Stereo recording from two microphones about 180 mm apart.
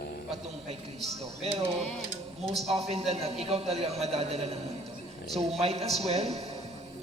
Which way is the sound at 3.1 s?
35° right (ahead or behind).